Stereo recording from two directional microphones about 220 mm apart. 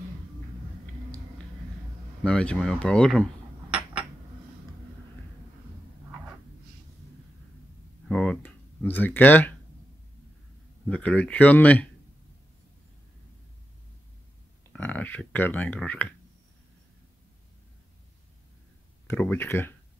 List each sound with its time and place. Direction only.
2.2 s speech: 5° left (ahead or behind)
8.1 s a sound: 5° left (ahead or behind)
10.9 s speech: 5° left (ahead or behind)
14.7 s speech: 5° left (ahead or behind)
19.0 s speech: 10° left (ahead or behind)